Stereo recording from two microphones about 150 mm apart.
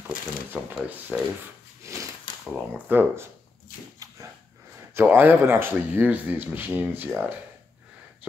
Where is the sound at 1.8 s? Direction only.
20° right (ahead or behind).